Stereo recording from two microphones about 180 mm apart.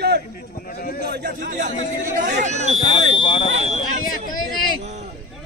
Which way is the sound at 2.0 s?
45° right (ahead or behind).